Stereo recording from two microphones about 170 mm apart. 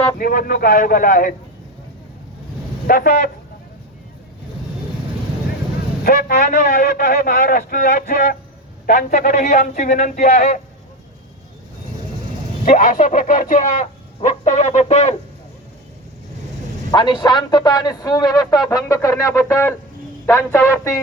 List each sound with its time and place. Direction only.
0.2 s a man's voice: 55° left (ahead or behind)
2.8 s a man's voice: 60° left (ahead or behind)
6.1 s speech: 50° left (ahead or behind)
12.6 s speech: 50° left (ahead or behind)
16.9 s a man's voice: 30° left (ahead or behind)